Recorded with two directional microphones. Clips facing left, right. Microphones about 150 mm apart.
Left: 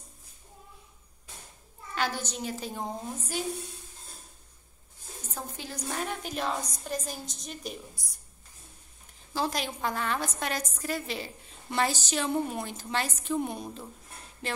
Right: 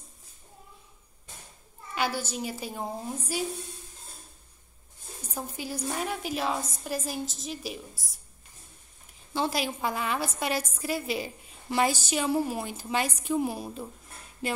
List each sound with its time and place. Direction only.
2.0 s a woman's voice: 10° right (ahead or behind)
5.3 s a woman's voice: 10° right (ahead or behind)
9.3 s a woman's voice: 5° right (ahead or behind)